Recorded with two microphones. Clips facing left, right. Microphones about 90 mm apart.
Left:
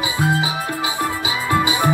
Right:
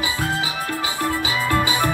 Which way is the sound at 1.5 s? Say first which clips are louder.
Left 3 dB; 20° left (ahead or behind).